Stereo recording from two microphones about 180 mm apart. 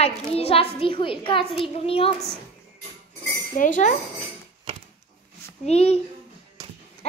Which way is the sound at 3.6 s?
45° left (ahead or behind).